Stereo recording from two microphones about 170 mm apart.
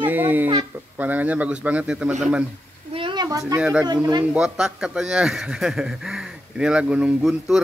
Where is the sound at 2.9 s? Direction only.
30° right (ahead or behind).